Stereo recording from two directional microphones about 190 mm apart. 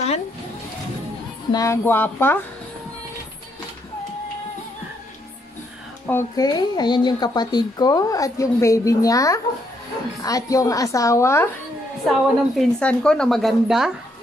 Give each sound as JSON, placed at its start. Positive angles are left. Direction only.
{"t": 1.5, "sound": "a woman's voice", "side_deg": 15}
{"t": 6.0, "sound": "a woman's voice", "side_deg": 15}
{"t": 12.1, "sound": "a woman's voice", "side_deg": 5}